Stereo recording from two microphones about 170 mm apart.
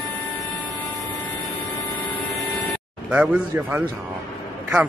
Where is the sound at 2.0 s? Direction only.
5° left (ahead or behind).